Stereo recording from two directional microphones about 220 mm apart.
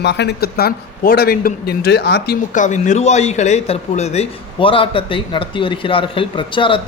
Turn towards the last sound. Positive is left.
turn(degrees=25)  # may be behind; listen again after turning